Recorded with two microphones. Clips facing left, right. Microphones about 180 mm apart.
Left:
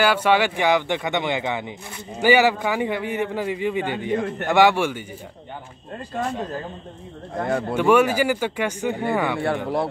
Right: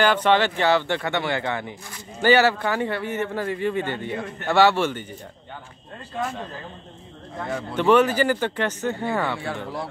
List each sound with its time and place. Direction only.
0.0 s a man's voice: 10° left (ahead or behind)
7.3 s speech: 55° left (ahead or behind)
7.7 s a man's voice: 10° left (ahead or behind)